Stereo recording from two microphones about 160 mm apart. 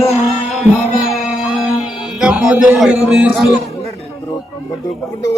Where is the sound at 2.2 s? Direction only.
5° right (ahead or behind).